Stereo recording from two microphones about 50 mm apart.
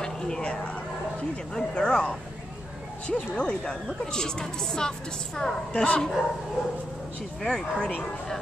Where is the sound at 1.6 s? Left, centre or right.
Centre.